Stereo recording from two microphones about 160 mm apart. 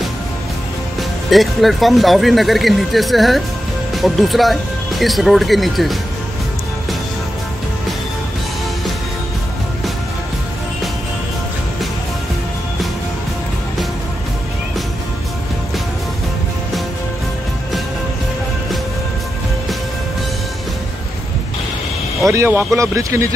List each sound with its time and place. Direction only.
1.3 s speech: centre (ahead or behind)
22.3 s speech: 15° right (ahead or behind)